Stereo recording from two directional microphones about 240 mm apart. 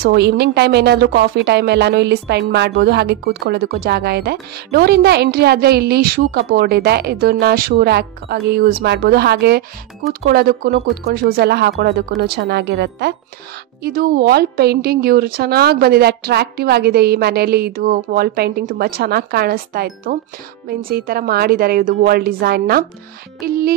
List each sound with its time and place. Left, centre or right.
0.0 s a woman's voice: right